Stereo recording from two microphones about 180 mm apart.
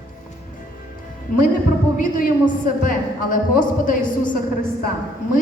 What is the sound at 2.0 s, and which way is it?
A woman's voice, 50° left (ahead or behind).